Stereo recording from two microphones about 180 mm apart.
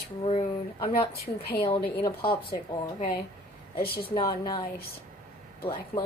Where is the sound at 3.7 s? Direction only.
55° left (ahead or behind).